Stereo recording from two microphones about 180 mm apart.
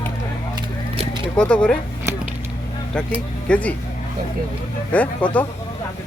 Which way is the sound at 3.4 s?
10° left (ahead or behind).